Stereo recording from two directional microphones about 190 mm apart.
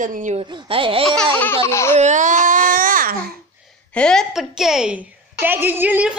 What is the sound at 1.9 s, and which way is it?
Speech, 40° right (ahead or behind).